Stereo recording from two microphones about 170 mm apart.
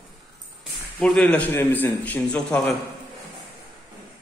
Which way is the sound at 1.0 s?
5° left (ahead or behind).